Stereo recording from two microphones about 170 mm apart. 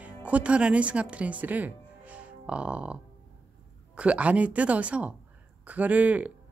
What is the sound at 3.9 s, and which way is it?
Speech, 5° right (ahead or behind).